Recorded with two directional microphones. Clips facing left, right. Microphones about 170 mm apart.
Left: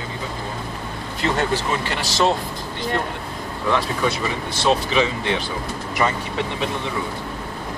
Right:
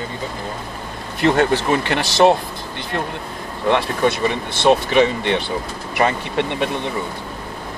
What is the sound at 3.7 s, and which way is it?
Speech, 60° right (ahead or behind).